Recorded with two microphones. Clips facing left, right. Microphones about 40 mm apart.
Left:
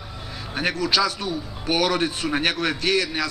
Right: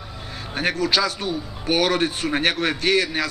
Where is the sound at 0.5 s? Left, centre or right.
Centre.